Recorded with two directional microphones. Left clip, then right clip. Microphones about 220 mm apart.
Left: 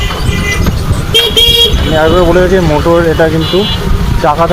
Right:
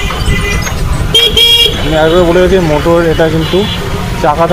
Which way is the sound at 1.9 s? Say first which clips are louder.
Even; centre (ahead or behind).